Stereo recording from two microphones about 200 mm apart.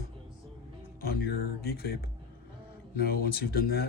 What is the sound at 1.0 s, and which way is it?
Speech, 50° left (ahead or behind).